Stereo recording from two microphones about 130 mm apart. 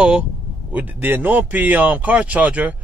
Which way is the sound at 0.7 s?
10° right (ahead or behind).